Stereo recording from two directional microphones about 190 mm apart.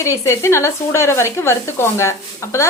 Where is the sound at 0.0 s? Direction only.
15° left (ahead or behind).